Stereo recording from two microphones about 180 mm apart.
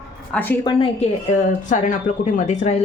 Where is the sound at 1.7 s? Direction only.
45° left (ahead or behind).